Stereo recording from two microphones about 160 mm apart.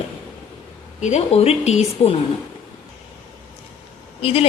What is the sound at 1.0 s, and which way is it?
A woman's voice, 40° left (ahead or behind).